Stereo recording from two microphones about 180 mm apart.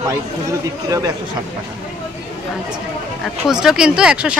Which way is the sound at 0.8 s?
20° right (ahead or behind).